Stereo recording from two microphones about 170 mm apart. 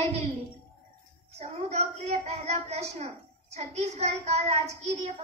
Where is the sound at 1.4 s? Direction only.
40° right (ahead or behind).